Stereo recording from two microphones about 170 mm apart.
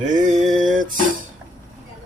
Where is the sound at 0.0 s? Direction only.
50° right (ahead or behind).